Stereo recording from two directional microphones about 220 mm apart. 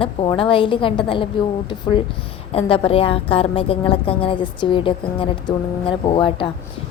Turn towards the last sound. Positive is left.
turn(degrees=20)  # may be behind; listen again after turning